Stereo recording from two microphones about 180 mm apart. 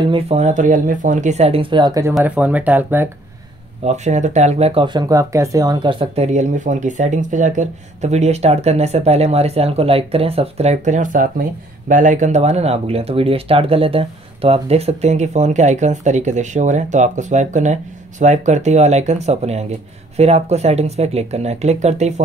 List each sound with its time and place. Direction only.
0.0 s speech: 35° right (ahead or behind)
2.1 s speech: 5° right (ahead or behind)
3.8 s speech: 40° right (ahead or behind)